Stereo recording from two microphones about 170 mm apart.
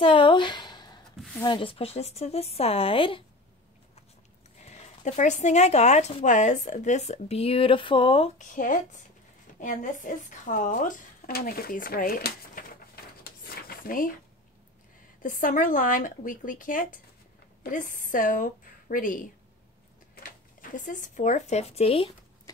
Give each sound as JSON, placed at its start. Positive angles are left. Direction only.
{"t": 0.0, "sound": "a sound", "side_deg": 30}
{"t": 1.4, "sound": "speech", "side_deg": 30}
{"t": 4.6, "sound": "speech", "side_deg": 40}
{"t": 8.4, "sound": "speech", "side_deg": 50}
{"t": 15.2, "sound": "speech", "side_deg": 55}